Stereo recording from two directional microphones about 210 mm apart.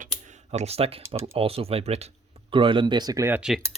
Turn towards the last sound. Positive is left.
turn(degrees=-5)  # may be behind; listen again after turning